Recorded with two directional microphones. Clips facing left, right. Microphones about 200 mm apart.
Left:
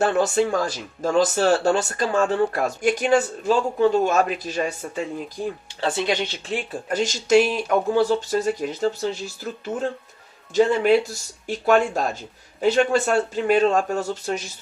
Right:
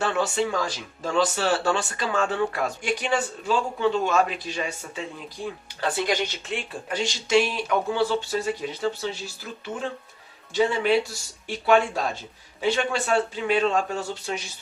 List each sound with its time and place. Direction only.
0.0 s speech: 45° left (ahead or behind)
5.8 s speech: 25° left (ahead or behind)
6.5 s speech: 45° left (ahead or behind)